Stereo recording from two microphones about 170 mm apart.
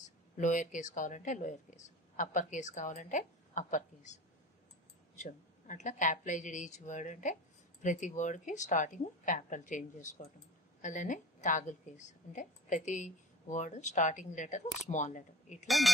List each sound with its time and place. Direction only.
0.0 s speech: 45° left (ahead or behind)
5.2 s speech: 45° left (ahead or behind)
15.6 s speech: centre (ahead or behind)